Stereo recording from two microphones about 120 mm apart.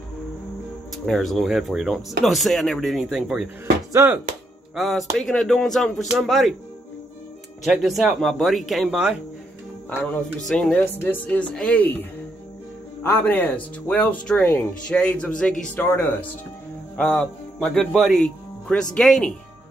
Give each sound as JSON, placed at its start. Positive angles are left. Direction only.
{"t": 0.9, "sound": "speech", "side_deg": 5}
{"t": 4.0, "sound": "speech", "side_deg": -25}
{"t": 4.7, "sound": "speech", "side_deg": 0}
{"t": 7.6, "sound": "speech", "side_deg": 0}
{"t": 10.4, "sound": "speech", "side_deg": 5}
{"t": 10.8, "sound": "speech", "side_deg": 15}
{"t": 17.1, "sound": "speech", "side_deg": 0}